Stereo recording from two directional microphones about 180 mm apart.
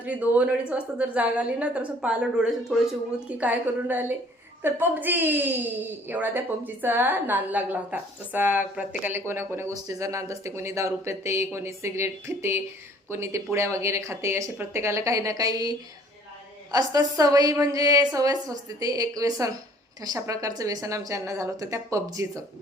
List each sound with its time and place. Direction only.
0.0 s a woman's voice: 10° right (ahead or behind)